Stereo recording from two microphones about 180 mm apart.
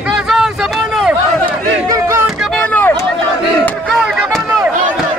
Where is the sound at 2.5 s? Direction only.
5° left (ahead or behind).